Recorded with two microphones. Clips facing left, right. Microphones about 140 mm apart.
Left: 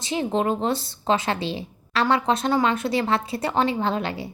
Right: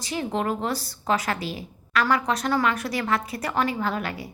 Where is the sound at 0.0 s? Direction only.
25° left (ahead or behind).